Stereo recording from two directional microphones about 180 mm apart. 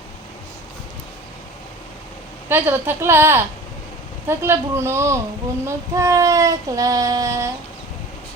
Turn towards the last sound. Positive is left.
turn(degrees=-20)  # may be behind; listen again after turning